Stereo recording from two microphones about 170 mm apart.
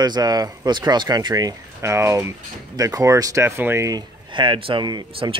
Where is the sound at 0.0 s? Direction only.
25° right (ahead or behind).